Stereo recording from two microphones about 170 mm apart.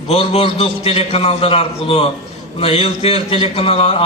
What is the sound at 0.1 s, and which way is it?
A man's voice, 35° left (ahead or behind).